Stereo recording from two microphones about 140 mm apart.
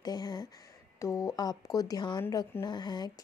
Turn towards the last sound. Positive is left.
turn(degrees=30)  # may be behind; listen again after turning